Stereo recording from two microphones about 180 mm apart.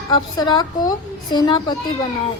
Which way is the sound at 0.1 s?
25° left (ahead or behind).